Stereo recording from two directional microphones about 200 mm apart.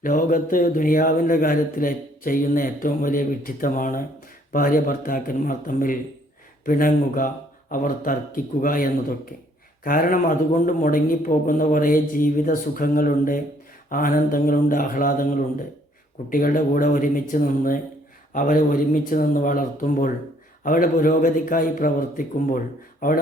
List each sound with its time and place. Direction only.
0.0 s a man's voice: 40° left (ahead or behind)